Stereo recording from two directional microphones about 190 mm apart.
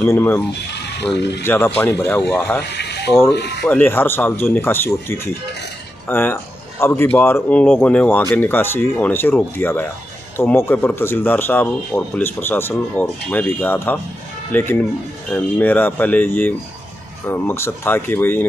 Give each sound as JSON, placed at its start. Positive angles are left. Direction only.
{"t": 0.0, "sound": "speech", "side_deg": 10}
{"t": 0.7, "sound": "speech", "side_deg": 65}
{"t": 1.4, "sound": "speech", "side_deg": 10}
{"t": 2.6, "sound": "a sound", "side_deg": 60}
{"t": 3.6, "sound": "speech", "side_deg": 10}